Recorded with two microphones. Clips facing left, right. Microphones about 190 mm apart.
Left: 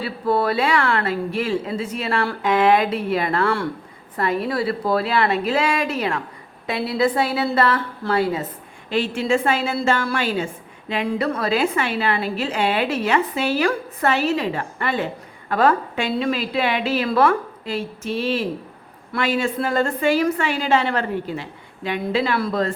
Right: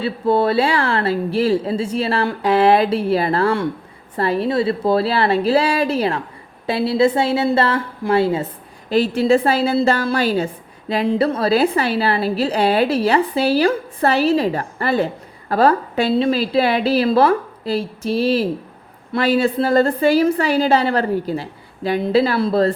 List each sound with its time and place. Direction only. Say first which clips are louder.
0.0 s a woman's voice: right 4 dB; 25° right (ahead or behind)
11.0 s a woman's voice: right 5 dB; 25° right (ahead or behind)